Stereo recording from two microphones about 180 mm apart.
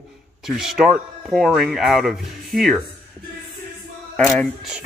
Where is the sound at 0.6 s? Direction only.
Centre (ahead or behind).